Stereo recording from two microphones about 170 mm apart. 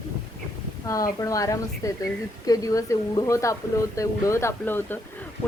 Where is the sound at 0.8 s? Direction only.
20° left (ahead or behind).